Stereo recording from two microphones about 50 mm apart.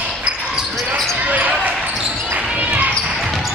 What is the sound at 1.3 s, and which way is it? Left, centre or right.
Basketball bounce, right.